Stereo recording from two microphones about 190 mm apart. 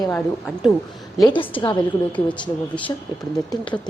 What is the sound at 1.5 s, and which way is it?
Speech, 10° left (ahead or behind).